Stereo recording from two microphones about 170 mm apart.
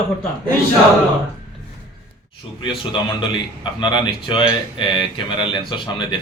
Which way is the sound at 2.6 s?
30° left (ahead or behind).